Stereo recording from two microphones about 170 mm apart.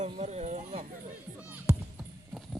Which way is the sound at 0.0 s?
40° right (ahead or behind).